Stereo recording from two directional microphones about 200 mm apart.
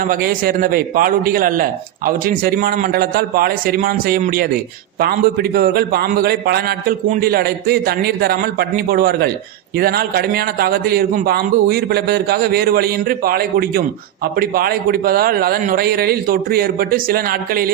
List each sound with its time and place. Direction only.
0.0 s a man's voice: 45° right (ahead or behind)